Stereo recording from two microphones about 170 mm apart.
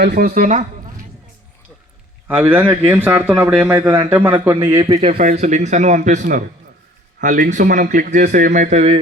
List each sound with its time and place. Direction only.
0.0 s speech: 65° right (ahead or behind)
2.2 s a man's voice: 10° right (ahead or behind)
4.9 s speech: 40° right (ahead or behind)